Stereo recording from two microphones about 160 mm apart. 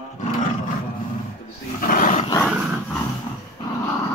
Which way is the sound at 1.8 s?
60° left (ahead or behind).